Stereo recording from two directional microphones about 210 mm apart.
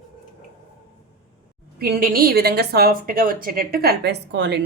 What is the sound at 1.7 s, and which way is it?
A woman's voice, 45° right (ahead or behind).